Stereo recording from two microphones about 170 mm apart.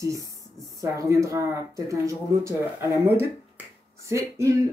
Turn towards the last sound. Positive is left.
turn(degrees=-15)  # may be behind; listen again after turning